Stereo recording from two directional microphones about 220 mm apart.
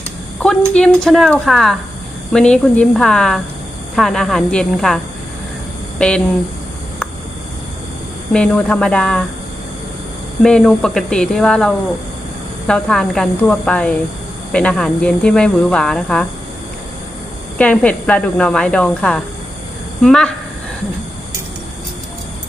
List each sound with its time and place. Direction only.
0.3 s speech: 5° left (ahead or behind)
6.0 s speech: 5° left (ahead or behind)
8.3 s speech: 5° left (ahead or behind)
10.4 s speech: centre (ahead or behind)
17.6 s speech: 5° left (ahead or behind)